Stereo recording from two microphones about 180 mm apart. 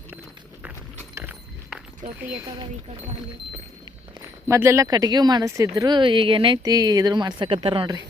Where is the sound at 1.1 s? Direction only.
10° right (ahead or behind).